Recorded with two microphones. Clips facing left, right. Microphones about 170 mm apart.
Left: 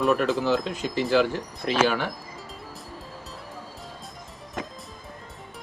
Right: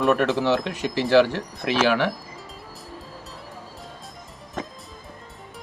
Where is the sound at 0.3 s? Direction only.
75° right (ahead or behind).